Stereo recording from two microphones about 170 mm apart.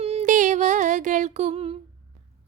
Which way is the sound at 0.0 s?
40° right (ahead or behind).